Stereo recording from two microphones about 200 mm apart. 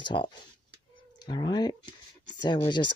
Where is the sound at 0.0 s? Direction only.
25° left (ahead or behind).